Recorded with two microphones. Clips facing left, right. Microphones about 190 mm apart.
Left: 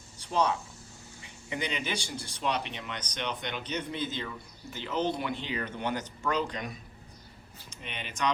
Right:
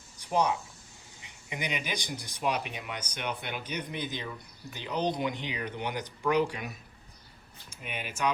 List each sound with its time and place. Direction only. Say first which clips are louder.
0.2 s speech: right 1 dB; 10° right (ahead or behind)
7.8 s speech: right 1 dB; 5° right (ahead or behind)